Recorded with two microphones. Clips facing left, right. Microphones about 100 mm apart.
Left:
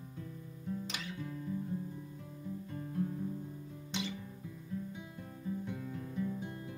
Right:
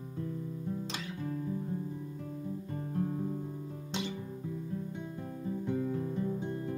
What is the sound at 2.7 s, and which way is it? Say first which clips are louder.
Music: right 3 dB; 40° right (ahead or behind).